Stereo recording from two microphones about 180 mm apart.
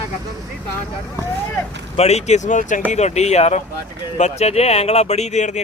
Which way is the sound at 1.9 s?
35° left (ahead or behind).